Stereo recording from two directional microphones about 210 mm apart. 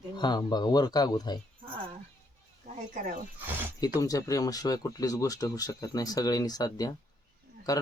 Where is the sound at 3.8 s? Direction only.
15° left (ahead or behind).